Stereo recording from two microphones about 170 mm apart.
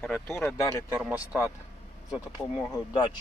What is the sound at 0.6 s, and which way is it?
Speech, 20° left (ahead or behind).